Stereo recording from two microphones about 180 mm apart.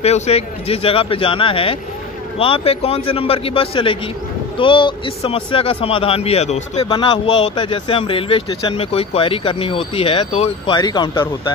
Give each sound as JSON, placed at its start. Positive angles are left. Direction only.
{"t": 0.0, "sound": "speech", "side_deg": 35}